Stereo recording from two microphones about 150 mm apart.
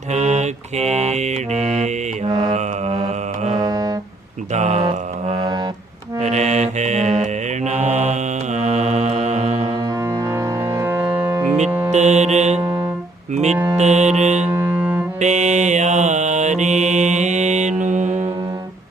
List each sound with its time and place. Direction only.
0.1 s mantra: 50° right (ahead or behind)
3.6 s music: 25° right (ahead or behind)
4.5 s mantra: 50° right (ahead or behind)
9.8 s music: 20° right (ahead or behind)
11.9 s mantra: 50° right (ahead or behind)
12.6 s music: 20° right (ahead or behind)
13.3 s music: 50° right (ahead or behind)
13.7 s mantra: 50° right (ahead or behind)
14.5 s music: 10° right (ahead or behind)
15.2 s mantra: 50° right (ahead or behind)